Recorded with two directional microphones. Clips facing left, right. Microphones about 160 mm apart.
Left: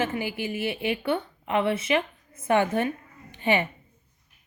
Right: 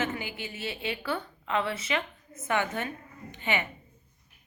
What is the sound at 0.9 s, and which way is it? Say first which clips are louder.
A woman's voice: left 5 dB; 25° left (ahead or behind).